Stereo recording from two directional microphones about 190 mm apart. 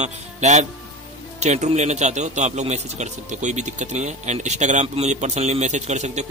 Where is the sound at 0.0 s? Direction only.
35° right (ahead or behind).